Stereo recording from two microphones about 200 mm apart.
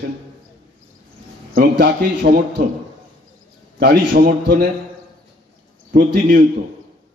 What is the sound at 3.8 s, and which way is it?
Speech, 50° right (ahead or behind).